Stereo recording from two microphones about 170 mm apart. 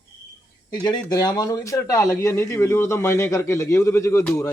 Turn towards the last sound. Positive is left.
turn(degrees=15)  # may be behind; listen again after turning